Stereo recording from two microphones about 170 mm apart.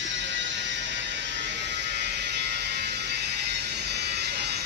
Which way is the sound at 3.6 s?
75° right (ahead or behind).